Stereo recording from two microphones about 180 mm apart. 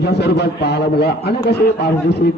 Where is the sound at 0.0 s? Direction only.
65° left (ahead or behind).